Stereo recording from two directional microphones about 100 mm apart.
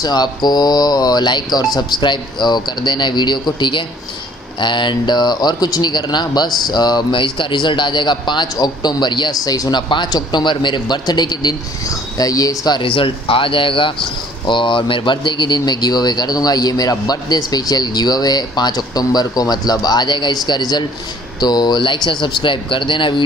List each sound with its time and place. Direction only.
0.0 s speech: 40° left (ahead or behind)